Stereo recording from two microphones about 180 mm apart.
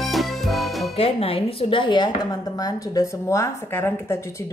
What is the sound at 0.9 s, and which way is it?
Music, 35° left (ahead or behind).